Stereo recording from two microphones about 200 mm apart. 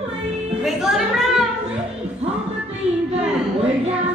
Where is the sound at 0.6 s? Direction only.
Centre (ahead or behind).